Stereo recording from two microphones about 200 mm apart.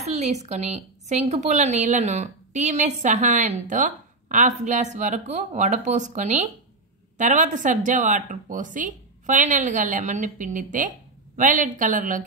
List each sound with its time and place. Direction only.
0.0 s a woman's voice: 35° right (ahead or behind)